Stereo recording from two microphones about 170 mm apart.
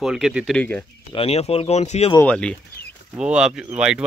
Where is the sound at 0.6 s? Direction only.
10° left (ahead or behind).